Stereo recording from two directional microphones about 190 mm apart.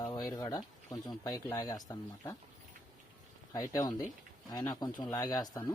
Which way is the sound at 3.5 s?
20° left (ahead or behind).